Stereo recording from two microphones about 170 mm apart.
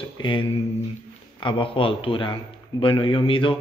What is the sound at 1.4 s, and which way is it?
Speech, 30° left (ahead or behind).